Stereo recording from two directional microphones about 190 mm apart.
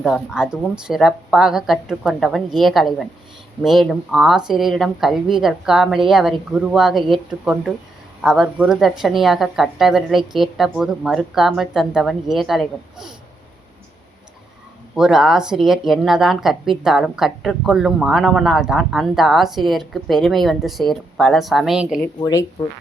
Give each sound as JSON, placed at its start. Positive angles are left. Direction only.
{"t": 0.0, "sound": "speech", "side_deg": 0}
{"t": 14.9, "sound": "speech", "side_deg": -5}
{"t": 22.0, "sound": "speech", "side_deg": 15}